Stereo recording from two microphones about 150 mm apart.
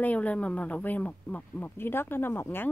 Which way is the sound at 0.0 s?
10° left (ahead or behind).